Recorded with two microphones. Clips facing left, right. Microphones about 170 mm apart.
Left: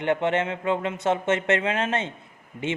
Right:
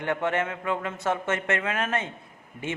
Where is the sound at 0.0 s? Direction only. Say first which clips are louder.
Left 3 dB; 20° left (ahead or behind).